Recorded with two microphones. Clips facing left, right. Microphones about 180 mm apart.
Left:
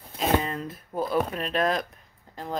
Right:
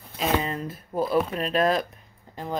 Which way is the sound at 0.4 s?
5° right (ahead or behind).